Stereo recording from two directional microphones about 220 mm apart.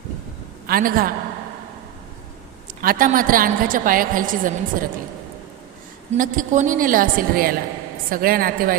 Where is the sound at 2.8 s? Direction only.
40° right (ahead or behind).